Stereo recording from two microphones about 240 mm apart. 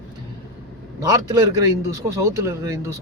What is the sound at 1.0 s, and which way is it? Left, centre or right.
A man's voice, centre.